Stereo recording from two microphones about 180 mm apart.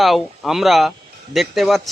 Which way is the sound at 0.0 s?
Centre (ahead or behind).